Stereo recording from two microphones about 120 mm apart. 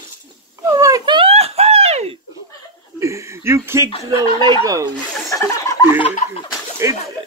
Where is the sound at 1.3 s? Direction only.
55° right (ahead or behind).